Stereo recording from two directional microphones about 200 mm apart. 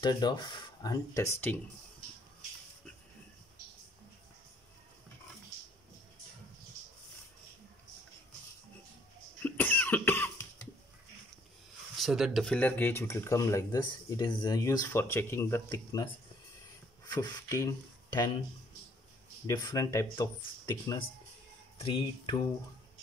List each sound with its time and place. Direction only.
0.0 s speech: 20° left (ahead or behind)
9.4 s cough: 10° left (ahead or behind)
12.0 s speech: centre (ahead or behind); by 16.1 s 20° left (ahead or behind)
17.1 s speech: 15° left (ahead or behind)
19.4 s speech: 15° left (ahead or behind)